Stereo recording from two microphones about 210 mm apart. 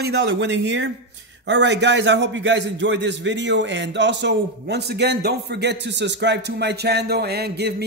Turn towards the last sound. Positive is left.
turn(degrees=-50)  # may be behind; listen again after turning